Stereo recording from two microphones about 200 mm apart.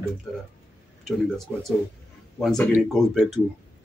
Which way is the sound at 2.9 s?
Centre (ahead or behind).